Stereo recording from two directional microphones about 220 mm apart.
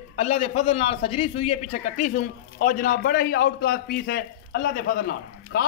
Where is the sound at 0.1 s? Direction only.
30° left (ahead or behind).